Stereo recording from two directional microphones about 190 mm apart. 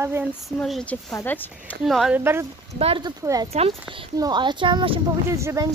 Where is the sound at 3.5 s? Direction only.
30° right (ahead or behind).